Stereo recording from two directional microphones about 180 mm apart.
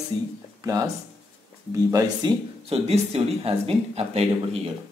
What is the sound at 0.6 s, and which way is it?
Speech, 20° right (ahead or behind).